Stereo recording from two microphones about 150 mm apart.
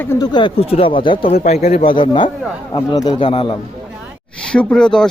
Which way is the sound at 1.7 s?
45° left (ahead or behind).